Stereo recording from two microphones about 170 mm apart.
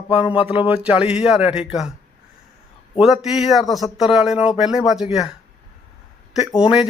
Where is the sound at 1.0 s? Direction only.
5° right (ahead or behind).